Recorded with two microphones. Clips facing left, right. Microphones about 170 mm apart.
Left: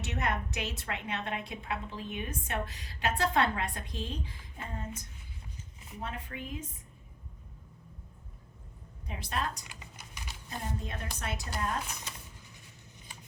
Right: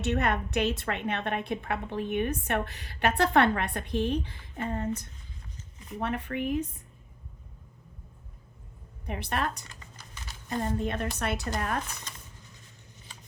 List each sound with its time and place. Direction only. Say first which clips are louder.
0.0 s a woman's voice: right 6 dB; 65° right (ahead or behind)
9.0 s a woman's voice: right 4 dB; 65° right (ahead or behind)
9.6 s typing: even; 15° left (ahead or behind)
10.5 s speech: right 9 dB; 70° right (ahead or behind)